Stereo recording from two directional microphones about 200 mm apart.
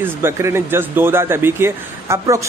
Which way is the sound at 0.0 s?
10° right (ahead or behind).